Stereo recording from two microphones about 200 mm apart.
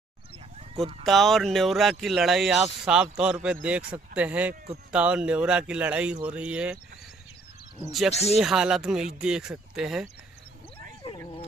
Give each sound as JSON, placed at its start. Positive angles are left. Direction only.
{"t": 1.0, "sound": "speech", "side_deg": 0}
{"t": 8.1, "sound": "speech", "side_deg": 30}
{"t": 8.4, "sound": "speech", "side_deg": -5}